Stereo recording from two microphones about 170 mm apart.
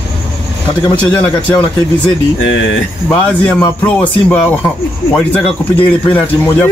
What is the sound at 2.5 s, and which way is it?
Speech, 90° left.